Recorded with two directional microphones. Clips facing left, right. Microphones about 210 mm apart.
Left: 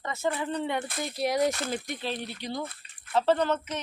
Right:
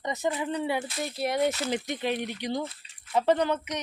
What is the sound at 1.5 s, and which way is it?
Speech, 55° left (ahead or behind).